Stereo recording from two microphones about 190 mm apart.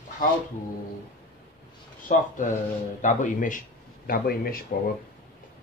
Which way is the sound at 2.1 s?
45° left (ahead or behind).